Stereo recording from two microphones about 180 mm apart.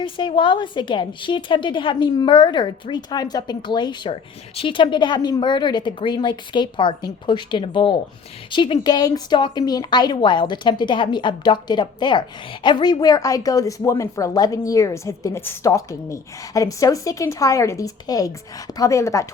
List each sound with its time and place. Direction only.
0.0 s a woman's voice: 25° left (ahead or behind)